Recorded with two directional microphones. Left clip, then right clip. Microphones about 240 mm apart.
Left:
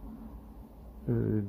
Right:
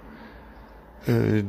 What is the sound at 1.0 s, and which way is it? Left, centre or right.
Speech, right.